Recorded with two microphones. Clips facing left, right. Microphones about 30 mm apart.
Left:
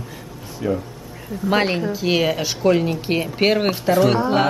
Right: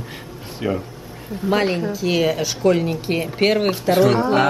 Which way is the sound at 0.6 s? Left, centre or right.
Right.